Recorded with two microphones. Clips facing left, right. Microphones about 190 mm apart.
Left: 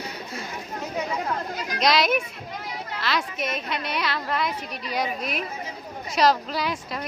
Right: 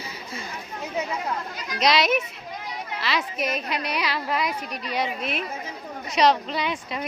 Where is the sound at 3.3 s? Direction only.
35° right (ahead or behind).